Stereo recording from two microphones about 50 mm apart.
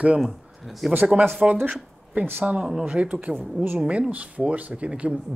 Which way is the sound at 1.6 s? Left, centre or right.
Right.